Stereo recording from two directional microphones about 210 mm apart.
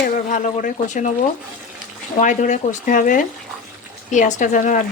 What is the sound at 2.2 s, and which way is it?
Speech, 35° left (ahead or behind).